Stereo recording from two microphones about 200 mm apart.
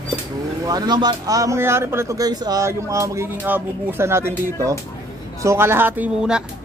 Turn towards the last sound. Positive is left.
turn(degrees=-5)  # may be behind; listen again after turning